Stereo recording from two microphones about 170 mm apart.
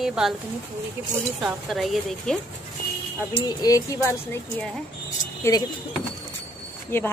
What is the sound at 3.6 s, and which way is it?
Speech, 20° left (ahead or behind).